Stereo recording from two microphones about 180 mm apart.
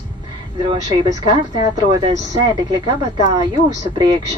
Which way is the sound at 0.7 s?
20° right (ahead or behind).